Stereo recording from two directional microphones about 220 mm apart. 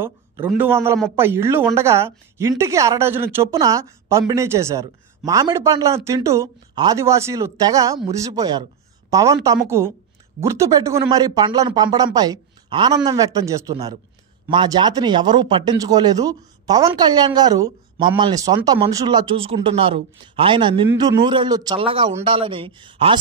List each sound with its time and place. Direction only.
0.5 s a woman's voice: 10° right (ahead or behind)